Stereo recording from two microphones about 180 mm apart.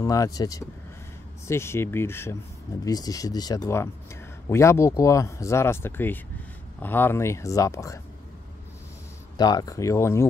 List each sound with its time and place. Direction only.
0.0 s speech: 20° left (ahead or behind)
9.4 s speech: 20° left (ahead or behind)